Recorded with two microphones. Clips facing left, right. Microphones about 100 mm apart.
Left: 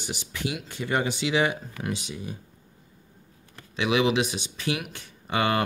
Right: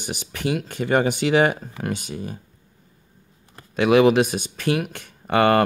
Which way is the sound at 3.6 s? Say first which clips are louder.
Right 8 dB; 50° right (ahead or behind).